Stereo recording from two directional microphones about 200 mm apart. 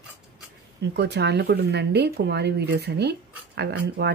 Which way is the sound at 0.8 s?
55° right (ahead or behind).